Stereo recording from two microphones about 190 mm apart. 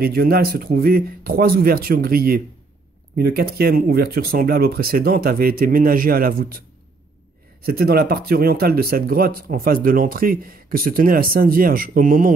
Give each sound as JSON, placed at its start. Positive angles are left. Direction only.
{"t": 0.0, "sound": "speech", "side_deg": -55}
{"t": 7.6, "sound": "speech", "side_deg": -55}